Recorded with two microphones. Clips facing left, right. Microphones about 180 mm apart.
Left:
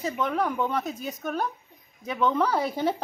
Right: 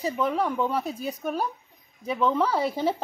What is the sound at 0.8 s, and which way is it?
Speech, 35° right (ahead or behind).